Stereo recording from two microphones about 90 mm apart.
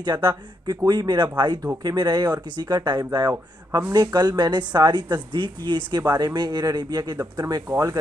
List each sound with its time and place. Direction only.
0.0 s speech: 50° right (ahead or behind)